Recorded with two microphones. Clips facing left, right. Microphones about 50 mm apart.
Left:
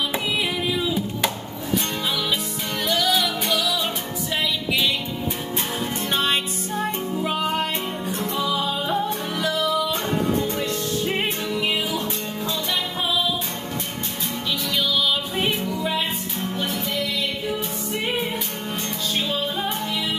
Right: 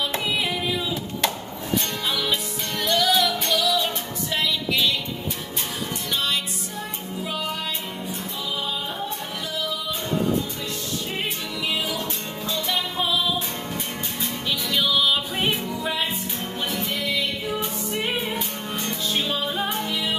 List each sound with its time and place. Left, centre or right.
0.7 s music: centre
2.8 s music: centre
6.1 s music: left
8.1 s music: left
11.1 s music: left
19.1 s music: centre